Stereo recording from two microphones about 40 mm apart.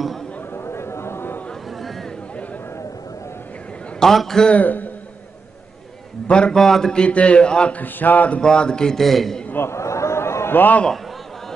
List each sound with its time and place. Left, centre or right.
0.7 s a sound: left
4.0 s a man's voice: centre
4.6 s speech: left
6.2 s a man's voice: left
6.5 s a man's voice: centre
7.0 s a man's voice: left
7.7 s speech: left
8.4 s a man's voice: left
8.9 s a man's voice: centre
9.6 s a sound: left